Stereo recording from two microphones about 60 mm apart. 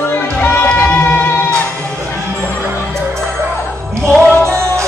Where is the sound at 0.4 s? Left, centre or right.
Left.